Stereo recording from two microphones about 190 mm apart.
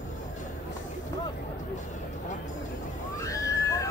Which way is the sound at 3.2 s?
15° left (ahead or behind).